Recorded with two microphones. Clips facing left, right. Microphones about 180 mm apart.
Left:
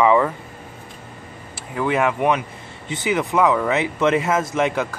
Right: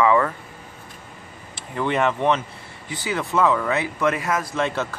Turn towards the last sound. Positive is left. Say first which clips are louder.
# left 4 dB
turn(degrees=15)  # may be behind; listen again after turning